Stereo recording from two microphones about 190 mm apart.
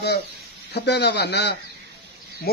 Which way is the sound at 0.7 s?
60° left (ahead or behind).